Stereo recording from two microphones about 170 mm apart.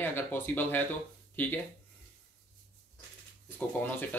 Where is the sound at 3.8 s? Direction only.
10° left (ahead or behind).